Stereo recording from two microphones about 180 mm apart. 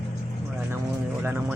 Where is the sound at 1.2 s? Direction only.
10° right (ahead or behind).